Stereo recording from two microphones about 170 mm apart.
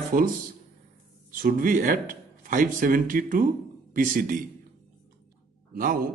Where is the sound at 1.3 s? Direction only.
50° right (ahead or behind).